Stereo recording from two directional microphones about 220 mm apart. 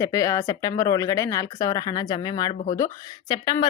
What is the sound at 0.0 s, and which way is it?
Speech, 15° left (ahead or behind).